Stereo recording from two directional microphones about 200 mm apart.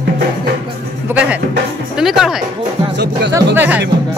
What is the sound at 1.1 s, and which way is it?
Speech, 5° right (ahead or behind).